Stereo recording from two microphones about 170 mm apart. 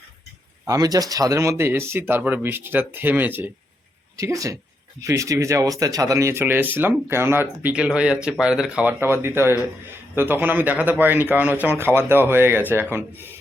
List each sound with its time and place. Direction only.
0.6 s a woman's voice: 20° right (ahead or behind)